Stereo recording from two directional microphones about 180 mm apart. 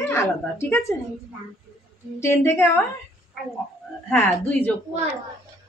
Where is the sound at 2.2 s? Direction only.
15° left (ahead or behind).